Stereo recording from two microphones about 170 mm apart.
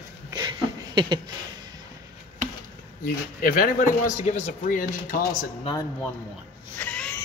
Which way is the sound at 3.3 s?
55° left (ahead or behind).